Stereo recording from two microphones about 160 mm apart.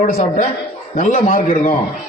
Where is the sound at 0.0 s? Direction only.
50° left (ahead or behind).